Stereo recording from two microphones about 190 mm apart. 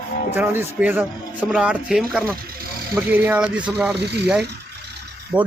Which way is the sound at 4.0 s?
60° right (ahead or behind).